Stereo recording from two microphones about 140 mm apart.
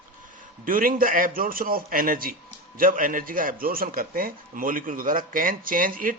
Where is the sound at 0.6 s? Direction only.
85° right.